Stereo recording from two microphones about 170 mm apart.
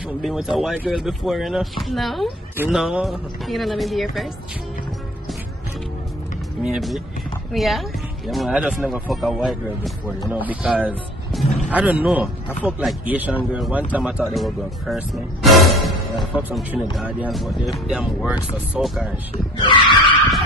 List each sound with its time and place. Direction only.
0.2 s speech: centre (ahead or behind)
6.6 s speech: centre (ahead or behind)
19.5 s skidding: 25° left (ahead or behind)